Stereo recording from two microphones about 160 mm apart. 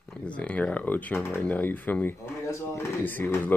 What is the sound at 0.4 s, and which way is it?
Speech, 10° left (ahead or behind).